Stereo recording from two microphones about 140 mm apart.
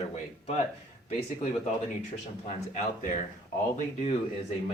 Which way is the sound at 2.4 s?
65° left (ahead or behind).